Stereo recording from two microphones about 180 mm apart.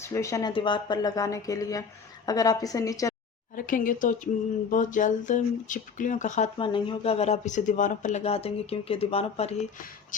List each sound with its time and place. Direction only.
0.0 s speech: 15° left (ahead or behind)
0.5 s speech: 25° left (ahead or behind)
3.5 s speech: 50° left (ahead or behind)
6.6 s speech: 25° left (ahead or behind)